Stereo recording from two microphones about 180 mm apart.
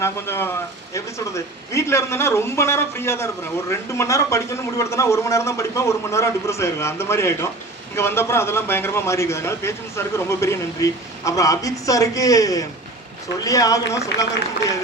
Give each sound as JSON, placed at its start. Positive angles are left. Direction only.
{"t": 0.0, "sound": "a man's voice", "side_deg": 15}